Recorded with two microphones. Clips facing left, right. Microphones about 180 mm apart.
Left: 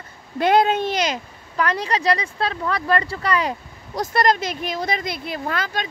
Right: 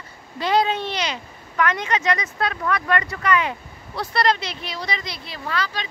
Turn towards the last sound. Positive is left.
turn(degrees=50)  # may be behind; listen again after turning